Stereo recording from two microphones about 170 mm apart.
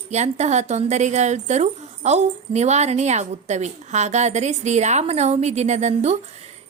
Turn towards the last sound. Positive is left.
turn(degrees=-40)  # may be behind; listen again after turning